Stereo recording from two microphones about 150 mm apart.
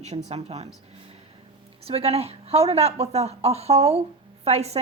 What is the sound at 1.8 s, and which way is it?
A woman's voice, 40° right (ahead or behind).